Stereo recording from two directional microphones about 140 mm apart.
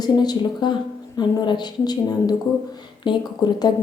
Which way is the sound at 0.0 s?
30° left (ahead or behind).